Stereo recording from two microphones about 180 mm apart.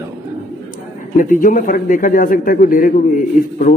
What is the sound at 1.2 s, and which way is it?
A man's voice, 45° left (ahead or behind).